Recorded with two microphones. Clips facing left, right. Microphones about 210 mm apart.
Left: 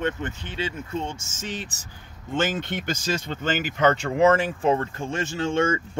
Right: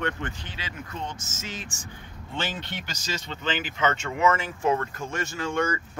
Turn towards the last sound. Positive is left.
turn(degrees=25)  # may be behind; listen again after turning